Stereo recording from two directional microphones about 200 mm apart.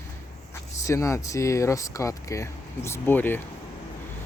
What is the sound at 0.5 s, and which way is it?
Speech, 15° left (ahead or behind).